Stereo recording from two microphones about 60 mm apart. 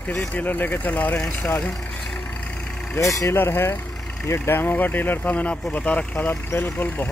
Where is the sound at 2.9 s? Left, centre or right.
Left.